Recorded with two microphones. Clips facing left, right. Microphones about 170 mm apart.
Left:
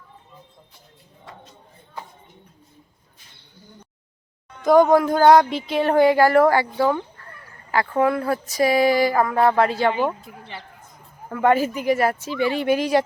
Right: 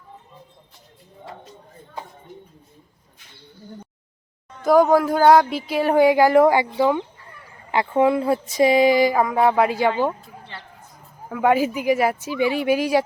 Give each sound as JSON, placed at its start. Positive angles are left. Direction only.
{"t": 4.6, "sound": "speech", "side_deg": -5}
{"t": 11.3, "sound": "speech", "side_deg": -5}